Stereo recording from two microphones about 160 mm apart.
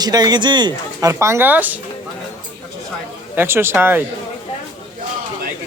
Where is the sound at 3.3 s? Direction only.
15° right (ahead or behind).